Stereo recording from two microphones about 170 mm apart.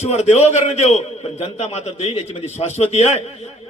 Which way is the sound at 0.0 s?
40° left (ahead or behind).